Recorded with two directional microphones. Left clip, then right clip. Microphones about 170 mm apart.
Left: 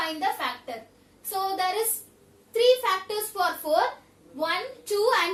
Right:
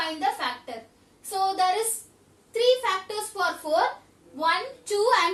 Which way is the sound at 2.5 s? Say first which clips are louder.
Left 1 dB; 20° left (ahead or behind).